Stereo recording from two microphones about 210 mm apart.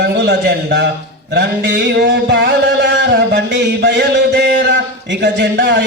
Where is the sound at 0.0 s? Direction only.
55° right (ahead or behind).